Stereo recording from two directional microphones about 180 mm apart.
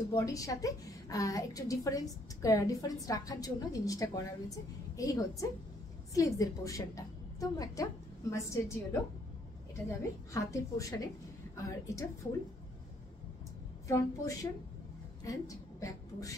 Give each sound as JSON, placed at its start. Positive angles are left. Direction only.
{"t": 0.1, "sound": "a woman's voice", "side_deg": 20}
{"t": 9.8, "sound": "a woman's voice", "side_deg": 15}
{"t": 13.8, "sound": "a woman's voice", "side_deg": 20}